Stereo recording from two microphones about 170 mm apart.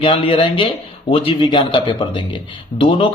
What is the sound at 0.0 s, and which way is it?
A man's voice, 35° left (ahead or behind).